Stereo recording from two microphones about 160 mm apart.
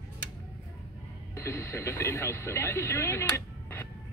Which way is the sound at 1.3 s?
15° left (ahead or behind).